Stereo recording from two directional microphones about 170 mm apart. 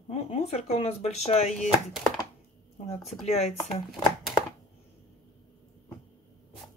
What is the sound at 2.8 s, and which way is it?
Speech, 40° left (ahead or behind).